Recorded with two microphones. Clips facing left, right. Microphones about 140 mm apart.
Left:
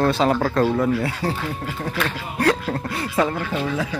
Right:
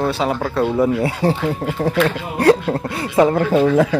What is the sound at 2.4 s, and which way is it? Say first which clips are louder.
Speech: right 6 dB; 30° right (ahead or behind).